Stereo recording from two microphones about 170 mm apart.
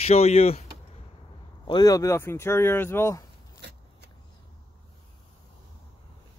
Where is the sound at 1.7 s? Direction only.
20° left (ahead or behind).